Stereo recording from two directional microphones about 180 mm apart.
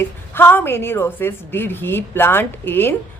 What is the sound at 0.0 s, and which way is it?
A woman's voice, 10° left (ahead or behind).